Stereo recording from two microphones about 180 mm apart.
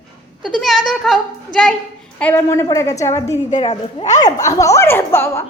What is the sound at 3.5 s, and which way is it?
Speech, 40° left (ahead or behind).